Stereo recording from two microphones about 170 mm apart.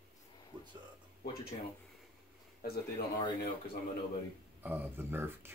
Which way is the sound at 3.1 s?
30° left (ahead or behind).